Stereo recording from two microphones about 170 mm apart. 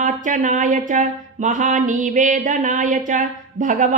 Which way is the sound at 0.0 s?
50° right (ahead or behind).